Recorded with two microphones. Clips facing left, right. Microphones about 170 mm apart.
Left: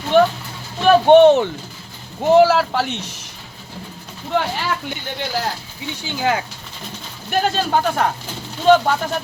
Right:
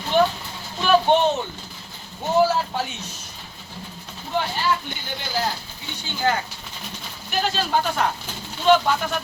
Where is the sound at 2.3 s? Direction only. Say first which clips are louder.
Left 7 dB; 90° left.